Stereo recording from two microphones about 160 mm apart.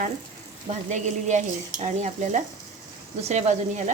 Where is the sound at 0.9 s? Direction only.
50° right (ahead or behind).